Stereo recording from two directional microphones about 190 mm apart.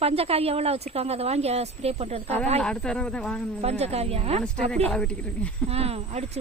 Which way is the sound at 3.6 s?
35° right (ahead or behind).